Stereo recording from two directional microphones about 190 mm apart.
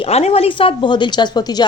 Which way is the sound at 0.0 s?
30° left (ahead or behind).